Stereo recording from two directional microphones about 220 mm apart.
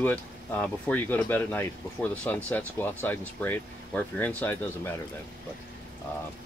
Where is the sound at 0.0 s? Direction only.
10° left (ahead or behind).